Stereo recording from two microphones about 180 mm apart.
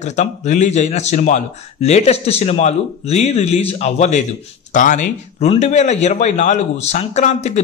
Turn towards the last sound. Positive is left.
turn(degrees=40)  # may be behind; listen again after turning